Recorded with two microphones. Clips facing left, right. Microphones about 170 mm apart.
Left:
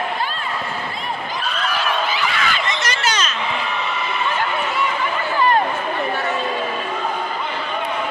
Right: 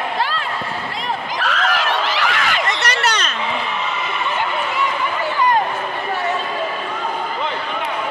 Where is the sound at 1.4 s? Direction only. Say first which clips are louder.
Right 4 dB; 90° right; by 3.3 s 65° right (ahead or behind).